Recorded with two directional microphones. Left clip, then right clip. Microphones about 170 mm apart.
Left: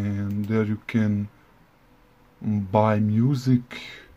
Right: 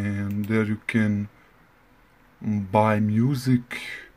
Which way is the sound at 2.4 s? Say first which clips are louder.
Even; 5° right (ahead or behind).